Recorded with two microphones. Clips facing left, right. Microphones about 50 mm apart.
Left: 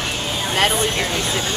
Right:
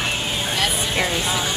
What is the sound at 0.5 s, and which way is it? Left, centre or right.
Speech, left.